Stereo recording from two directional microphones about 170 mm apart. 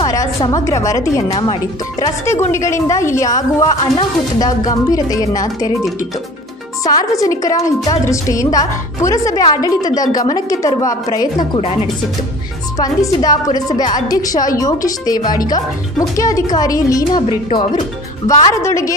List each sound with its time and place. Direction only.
0.0 s a woman's voice: 20° left (ahead or behind)
6.8 s a woman's voice: 20° left (ahead or behind)
12.7 s a woman's voice: 20° left (ahead or behind)